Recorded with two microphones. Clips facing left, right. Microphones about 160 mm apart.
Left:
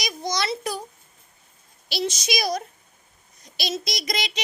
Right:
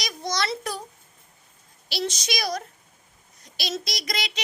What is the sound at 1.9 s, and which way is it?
A woman's voice, 10° left (ahead or behind).